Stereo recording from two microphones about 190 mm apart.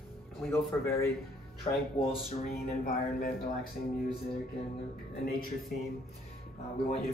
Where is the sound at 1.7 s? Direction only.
30° left (ahead or behind).